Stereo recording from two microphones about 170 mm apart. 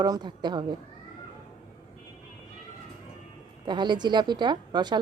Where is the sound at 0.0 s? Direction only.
25° right (ahead or behind).